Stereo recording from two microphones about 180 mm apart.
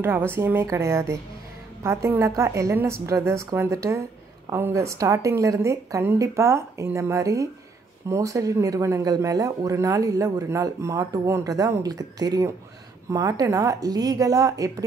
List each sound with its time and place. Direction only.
0.0 s a woman's voice: 10° right (ahead or behind)